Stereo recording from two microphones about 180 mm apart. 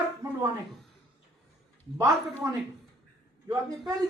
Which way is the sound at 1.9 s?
15° right (ahead or behind).